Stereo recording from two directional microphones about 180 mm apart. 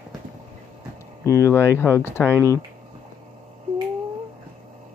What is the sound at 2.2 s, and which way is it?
Speech, 10° right (ahead or behind).